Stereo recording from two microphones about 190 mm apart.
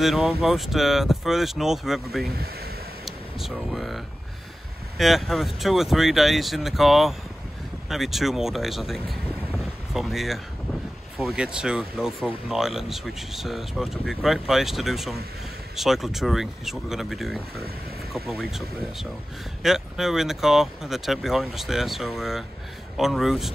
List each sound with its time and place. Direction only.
0.0 s speech: centre (ahead or behind)
2.3 s speech: 55° right (ahead or behind)
3.1 s speech: centre (ahead or behind)